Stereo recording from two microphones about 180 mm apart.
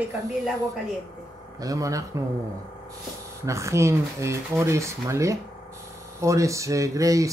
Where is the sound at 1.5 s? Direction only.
20° right (ahead or behind).